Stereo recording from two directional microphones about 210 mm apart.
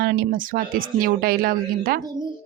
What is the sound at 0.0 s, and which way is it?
Speech, 45° right (ahead or behind).